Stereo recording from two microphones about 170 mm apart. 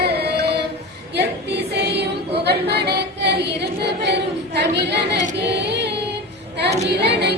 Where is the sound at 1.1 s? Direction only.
80° right.